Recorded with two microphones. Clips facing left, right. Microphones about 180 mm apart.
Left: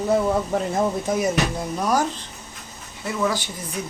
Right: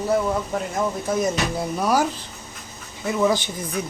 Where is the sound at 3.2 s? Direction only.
20° right (ahead or behind).